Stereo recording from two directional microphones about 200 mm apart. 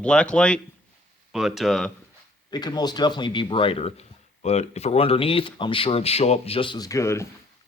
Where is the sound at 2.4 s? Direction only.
20° left (ahead or behind).